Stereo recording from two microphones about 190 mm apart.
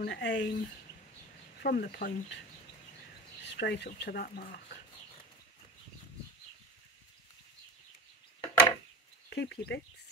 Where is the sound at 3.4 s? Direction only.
65° left (ahead or behind); by 4.6 s 50° left (ahead or behind).